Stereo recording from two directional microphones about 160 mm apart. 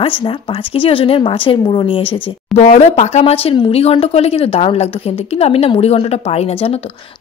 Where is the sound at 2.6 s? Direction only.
45° left (ahead or behind).